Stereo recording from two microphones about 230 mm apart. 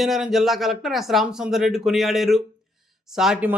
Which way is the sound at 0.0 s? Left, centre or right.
Centre.